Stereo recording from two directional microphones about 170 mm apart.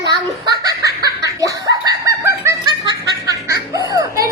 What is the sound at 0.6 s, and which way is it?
Chicken, 20° right (ahead or behind).